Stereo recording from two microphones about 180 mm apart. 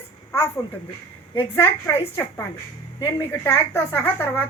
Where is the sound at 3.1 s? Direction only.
15° left (ahead or behind).